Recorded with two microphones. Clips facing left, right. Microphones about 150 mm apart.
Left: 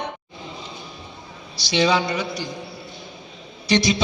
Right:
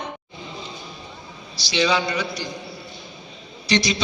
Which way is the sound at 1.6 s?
55° left (ahead or behind).